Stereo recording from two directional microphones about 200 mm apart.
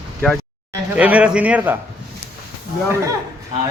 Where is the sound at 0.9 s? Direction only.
5° right (ahead or behind).